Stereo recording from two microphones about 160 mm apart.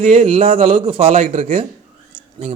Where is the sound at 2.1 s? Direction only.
35° right (ahead or behind).